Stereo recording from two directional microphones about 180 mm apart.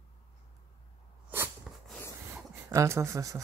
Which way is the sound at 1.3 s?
10° right (ahead or behind).